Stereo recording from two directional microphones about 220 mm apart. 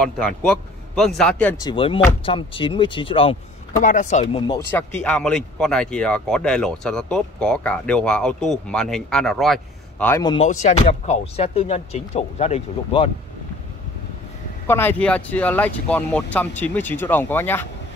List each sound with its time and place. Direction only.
0.0 s speech: 5° left (ahead or behind)
1.6 s speech: 20° left (ahead or behind)
4.7 s speech: 5° left (ahead or behind)
10.2 s speech: 25° left (ahead or behind)
14.7 s speech: 10° left (ahead or behind)